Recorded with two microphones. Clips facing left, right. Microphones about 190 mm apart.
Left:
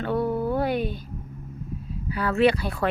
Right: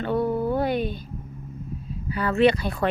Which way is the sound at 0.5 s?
10° left (ahead or behind).